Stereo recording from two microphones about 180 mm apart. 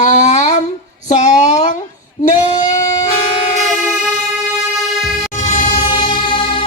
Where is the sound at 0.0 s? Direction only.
40° left (ahead or behind).